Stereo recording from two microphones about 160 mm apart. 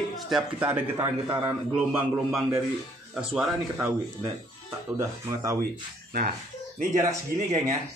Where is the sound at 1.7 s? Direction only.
5° right (ahead or behind).